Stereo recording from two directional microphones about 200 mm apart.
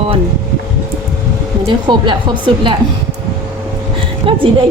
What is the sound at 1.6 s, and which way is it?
Speech, 25° right (ahead or behind).